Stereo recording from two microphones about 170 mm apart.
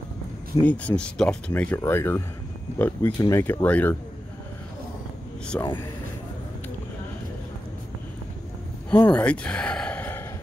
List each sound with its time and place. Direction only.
0.7 s speech: 5° left (ahead or behind)
5.5 s speech: 10° left (ahead or behind)
9.0 s speech: 5° left (ahead or behind)